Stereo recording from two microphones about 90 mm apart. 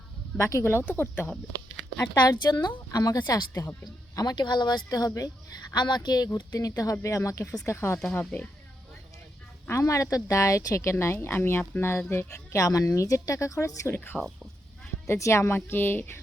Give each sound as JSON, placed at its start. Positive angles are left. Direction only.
{"t": 0.3, "sound": "speech", "side_deg": 30}
{"t": 2.1, "sound": "a woman's voice", "side_deg": 50}
{"t": 5.7, "sound": "a woman's voice", "side_deg": 55}
{"t": 8.1, "sound": "speech", "side_deg": 15}
{"t": 9.6, "sound": "a woman's voice", "side_deg": 30}